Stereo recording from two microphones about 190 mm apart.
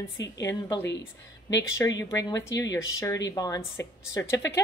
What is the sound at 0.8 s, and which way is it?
Speech, 65° left (ahead or behind).